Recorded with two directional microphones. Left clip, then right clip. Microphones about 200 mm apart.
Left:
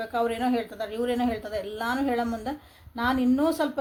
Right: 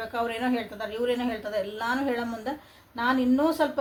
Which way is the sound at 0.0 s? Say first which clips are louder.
Left 2 dB; 55° left (ahead or behind).